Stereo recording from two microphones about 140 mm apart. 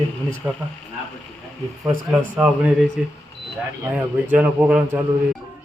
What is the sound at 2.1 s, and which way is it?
A man's voice, 10° right (ahead or behind).